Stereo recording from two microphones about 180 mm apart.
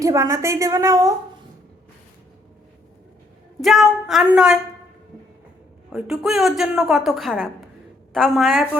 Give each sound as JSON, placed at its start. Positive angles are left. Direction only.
{"t": 0.0, "sound": "a woman's voice", "side_deg": -15}
{"t": 3.6, "sound": "a woman's voice", "side_deg": 0}
{"t": 5.9, "sound": "a woman's voice", "side_deg": 0}